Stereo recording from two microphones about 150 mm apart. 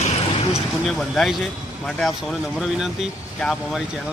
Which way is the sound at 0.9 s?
Centre (ahead or behind).